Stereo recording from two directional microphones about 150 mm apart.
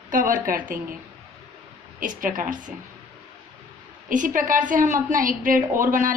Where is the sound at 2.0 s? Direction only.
60° right (ahead or behind).